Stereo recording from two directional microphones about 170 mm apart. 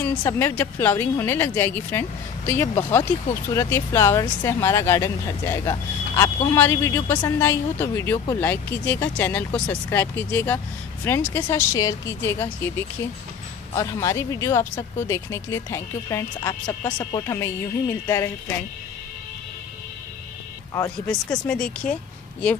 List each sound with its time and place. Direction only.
0.2 s speech: 15° left (ahead or behind)
21.1 s speech: 5° left (ahead or behind)